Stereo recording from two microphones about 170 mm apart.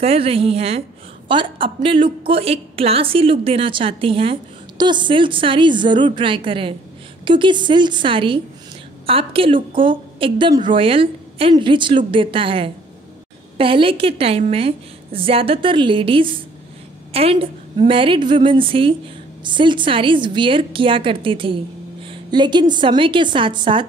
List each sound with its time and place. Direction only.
0.0 s a woman's voice: 35° right (ahead or behind)